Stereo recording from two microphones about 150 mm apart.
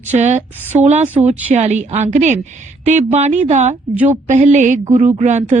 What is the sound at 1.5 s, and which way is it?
Speech, 50° right (ahead or behind).